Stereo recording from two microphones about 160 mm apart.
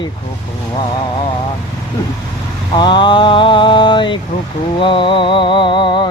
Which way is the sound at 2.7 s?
30° left (ahead or behind).